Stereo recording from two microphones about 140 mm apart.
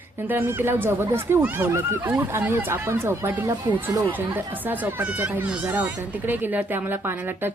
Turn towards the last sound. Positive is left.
turn(degrees=-15)  # may be behind; listen again after turning